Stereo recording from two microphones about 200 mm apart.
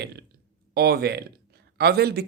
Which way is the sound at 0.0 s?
55° right (ahead or behind).